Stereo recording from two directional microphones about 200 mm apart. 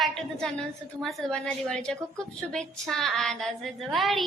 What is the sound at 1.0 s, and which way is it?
A woman's voice, 5° left (ahead or behind).